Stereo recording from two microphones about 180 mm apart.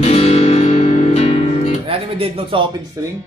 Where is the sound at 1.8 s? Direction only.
30° right (ahead or behind).